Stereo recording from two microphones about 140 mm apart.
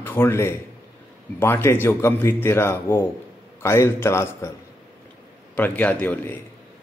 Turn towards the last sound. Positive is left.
turn(degrees=10)  # may be behind; listen again after turning